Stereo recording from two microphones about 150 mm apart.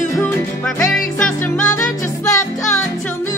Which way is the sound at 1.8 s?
20° left (ahead or behind).